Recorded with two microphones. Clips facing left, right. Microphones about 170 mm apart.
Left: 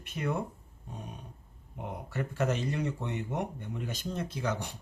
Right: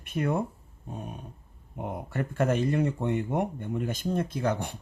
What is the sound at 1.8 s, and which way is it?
Speech, 50° right (ahead or behind).